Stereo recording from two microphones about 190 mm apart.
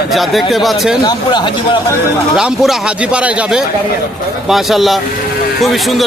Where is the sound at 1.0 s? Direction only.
20° left (ahead or behind).